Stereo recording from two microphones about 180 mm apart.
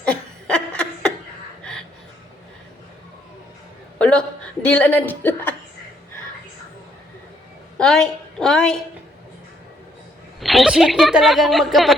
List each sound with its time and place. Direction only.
0.0 s laughter: 5° left (ahead or behind)
3.9 s speech: 5° left (ahead or behind)
7.8 s a woman's voice: 5° left (ahead or behind)
10.4 s speech: centre (ahead or behind)